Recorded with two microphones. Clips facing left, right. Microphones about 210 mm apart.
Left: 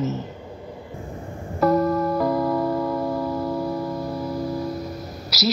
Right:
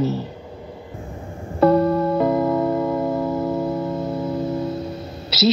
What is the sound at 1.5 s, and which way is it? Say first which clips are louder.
Music: right 4 dB; 30° right (ahead or behind).